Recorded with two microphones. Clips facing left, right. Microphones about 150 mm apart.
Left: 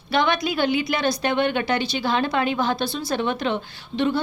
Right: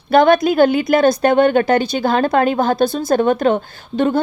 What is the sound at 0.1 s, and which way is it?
A woman's voice, 50° right (ahead or behind).